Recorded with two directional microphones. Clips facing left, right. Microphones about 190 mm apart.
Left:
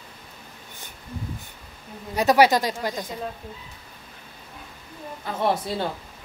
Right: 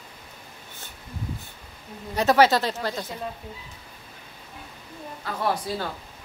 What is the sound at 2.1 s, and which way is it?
Speech, 15° left (ahead or behind).